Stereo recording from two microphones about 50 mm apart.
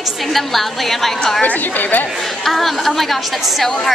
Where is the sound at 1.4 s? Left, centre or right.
Left.